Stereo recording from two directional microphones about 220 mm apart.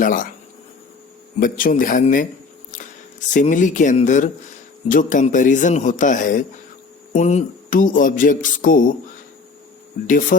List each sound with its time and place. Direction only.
0.0 s speech: 40° left (ahead or behind)
1.4 s speech: 40° left (ahead or behind)
2.7 s a sound: 35° left (ahead or behind)
3.3 s speech: 35° left (ahead or behind)
10.1 s speech: 40° left (ahead or behind)